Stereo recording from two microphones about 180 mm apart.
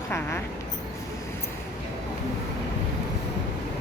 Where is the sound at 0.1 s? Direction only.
15° left (ahead or behind).